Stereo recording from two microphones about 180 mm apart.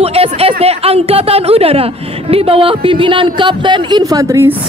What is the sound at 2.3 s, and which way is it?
Speech, 30° right (ahead or behind).